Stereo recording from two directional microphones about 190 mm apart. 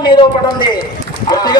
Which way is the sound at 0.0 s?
25° left (ahead or behind).